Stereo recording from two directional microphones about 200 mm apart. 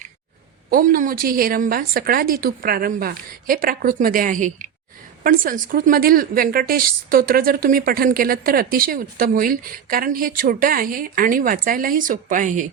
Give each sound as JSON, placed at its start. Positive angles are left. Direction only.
{"t": 0.7, "sound": "a woman's voice", "side_deg": -45}